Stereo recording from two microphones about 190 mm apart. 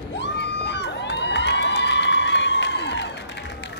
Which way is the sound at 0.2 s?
65° left (ahead or behind).